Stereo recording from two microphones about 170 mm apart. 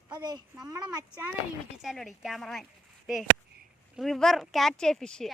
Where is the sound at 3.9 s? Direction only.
Centre (ahead or behind).